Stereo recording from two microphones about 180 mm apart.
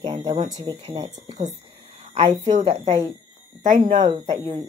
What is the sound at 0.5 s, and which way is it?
Speech, 30° right (ahead or behind).